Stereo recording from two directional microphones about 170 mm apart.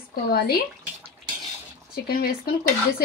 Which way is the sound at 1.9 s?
60° left (ahead or behind).